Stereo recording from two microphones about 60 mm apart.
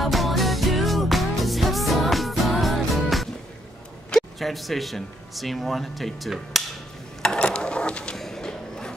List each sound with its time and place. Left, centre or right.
0.0 s music: centre
4.1 s speech: centre
7.2 s a sound: centre